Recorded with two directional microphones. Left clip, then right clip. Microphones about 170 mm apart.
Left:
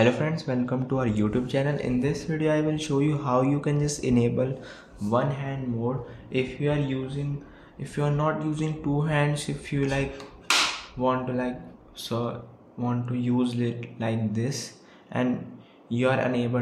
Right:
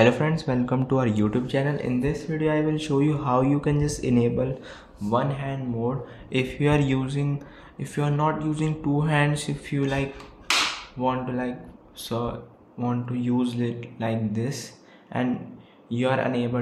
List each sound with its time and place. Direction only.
0.0 s speech: 15° right (ahead or behind)
6.3 s speech: 25° right (ahead or behind)
7.8 s speech: 10° right (ahead or behind)